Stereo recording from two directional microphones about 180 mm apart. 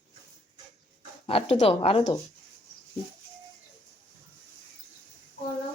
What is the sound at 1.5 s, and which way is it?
Speech, 30° left (ahead or behind).